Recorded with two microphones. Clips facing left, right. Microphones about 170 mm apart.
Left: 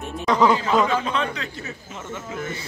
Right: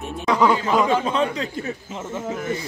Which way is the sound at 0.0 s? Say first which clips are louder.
Even; 5° right (ahead or behind).